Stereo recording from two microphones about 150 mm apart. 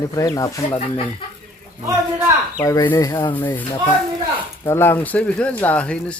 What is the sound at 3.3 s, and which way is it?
Speech, 10° left (ahead or behind).